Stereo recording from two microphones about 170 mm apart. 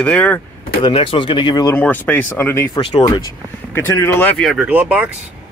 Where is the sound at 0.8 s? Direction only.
35° left (ahead or behind).